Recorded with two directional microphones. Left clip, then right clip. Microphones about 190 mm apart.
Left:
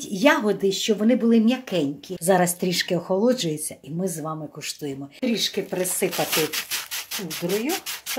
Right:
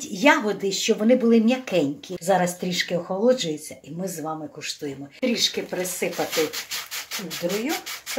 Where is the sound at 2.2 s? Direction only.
45° left (ahead or behind).